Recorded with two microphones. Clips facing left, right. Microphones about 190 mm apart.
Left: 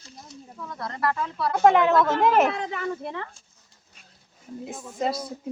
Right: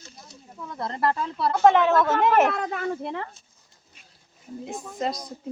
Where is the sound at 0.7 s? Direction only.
25° right (ahead or behind).